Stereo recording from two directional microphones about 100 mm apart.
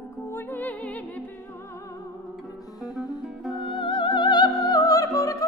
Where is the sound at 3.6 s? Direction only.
60° left (ahead or behind).